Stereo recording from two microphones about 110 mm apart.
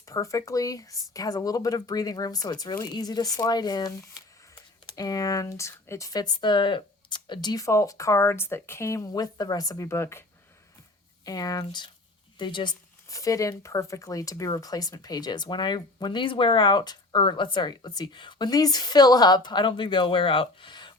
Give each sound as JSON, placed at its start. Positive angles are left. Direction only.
{"t": 0.0, "sound": "speech", "side_deg": 30}
{"t": 11.3, "sound": "speech", "side_deg": 35}
{"t": 13.1, "sound": "speech", "side_deg": 30}